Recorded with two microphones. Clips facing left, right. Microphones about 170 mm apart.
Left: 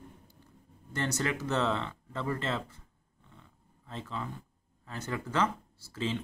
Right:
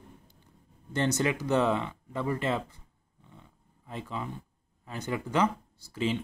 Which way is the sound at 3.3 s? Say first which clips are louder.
Right 3 dB; 15° right (ahead or behind).